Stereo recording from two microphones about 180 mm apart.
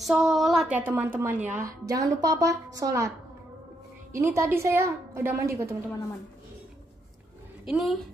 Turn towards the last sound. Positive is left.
turn(degrees=0)  # may be behind; listen again after turning